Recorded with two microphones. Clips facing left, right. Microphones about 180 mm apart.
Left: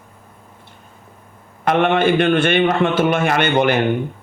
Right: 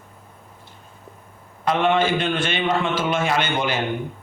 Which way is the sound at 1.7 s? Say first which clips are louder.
Left 4 dB; 60° left (ahead or behind).